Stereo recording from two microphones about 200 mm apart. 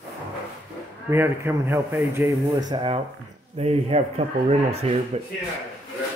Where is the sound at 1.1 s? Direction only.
10° right (ahead or behind); by 5.3 s 35° right (ahead or behind).